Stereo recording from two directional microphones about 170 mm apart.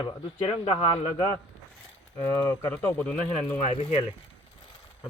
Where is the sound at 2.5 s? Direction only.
10° left (ahead or behind).